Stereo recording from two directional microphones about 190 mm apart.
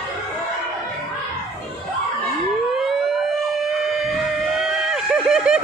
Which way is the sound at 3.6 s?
Centre (ahead or behind).